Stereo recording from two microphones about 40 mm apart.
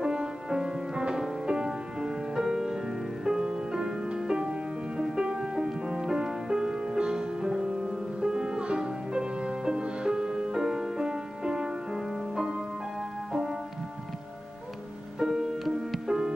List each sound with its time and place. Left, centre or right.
0.0 s music: centre
15.1 s music: centre